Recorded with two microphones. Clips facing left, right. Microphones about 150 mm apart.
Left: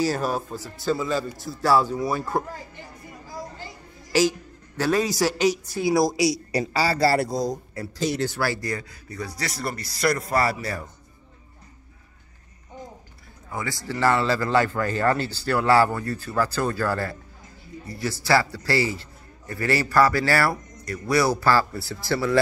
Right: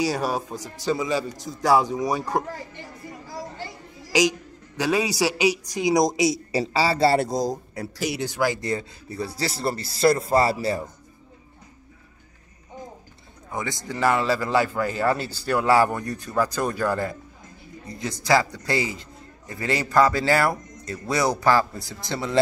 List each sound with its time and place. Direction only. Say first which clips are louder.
0.0 s speech: even; 10° right (ahead or behind)
4.1 s speech: even; 15° right (ahead or behind)
8.0 s a man's voice: even; 10° right (ahead or behind)
13.5 s a man's voice: even; 20° right (ahead or behind)